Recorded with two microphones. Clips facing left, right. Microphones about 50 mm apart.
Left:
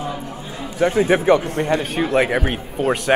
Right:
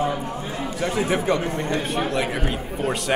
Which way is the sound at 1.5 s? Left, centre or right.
Left.